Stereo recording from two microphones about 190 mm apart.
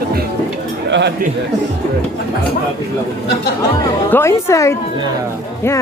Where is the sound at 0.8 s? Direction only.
70° right (ahead or behind).